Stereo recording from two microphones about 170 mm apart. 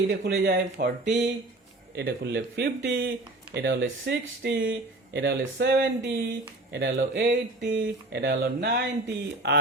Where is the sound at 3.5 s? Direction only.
90° right.